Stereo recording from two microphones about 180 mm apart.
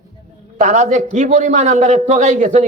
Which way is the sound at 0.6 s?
40° right (ahead or behind).